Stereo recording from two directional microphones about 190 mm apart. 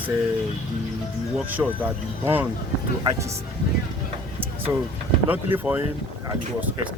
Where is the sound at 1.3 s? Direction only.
10° right (ahead or behind).